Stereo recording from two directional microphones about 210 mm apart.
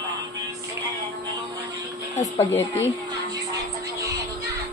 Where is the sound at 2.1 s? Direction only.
10° left (ahead or behind).